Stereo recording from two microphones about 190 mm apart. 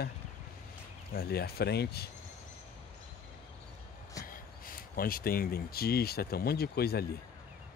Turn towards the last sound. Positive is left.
turn(degrees=55)  # may be behind; listen again after turning